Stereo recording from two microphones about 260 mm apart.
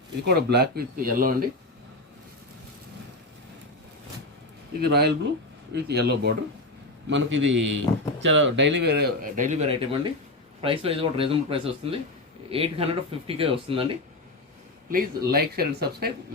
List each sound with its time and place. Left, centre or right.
0.2 s speech: right
4.8 s a man's voice: right
14.8 s speech: right